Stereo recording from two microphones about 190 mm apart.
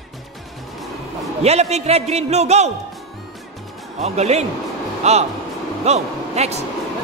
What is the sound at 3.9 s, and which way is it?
A man's voice, 35° right (ahead or behind).